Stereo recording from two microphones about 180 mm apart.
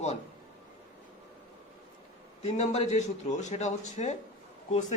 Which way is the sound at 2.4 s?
40° left (ahead or behind).